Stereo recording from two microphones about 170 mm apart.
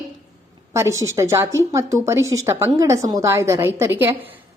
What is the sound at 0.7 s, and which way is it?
A woman's voice, 15° right (ahead or behind).